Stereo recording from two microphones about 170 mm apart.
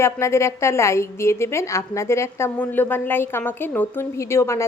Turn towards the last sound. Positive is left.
turn(degrees=15)  # may be behind; listen again after turning